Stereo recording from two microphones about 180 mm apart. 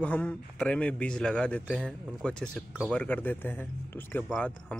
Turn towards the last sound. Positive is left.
turn(degrees=10)  # may be behind; listen again after turning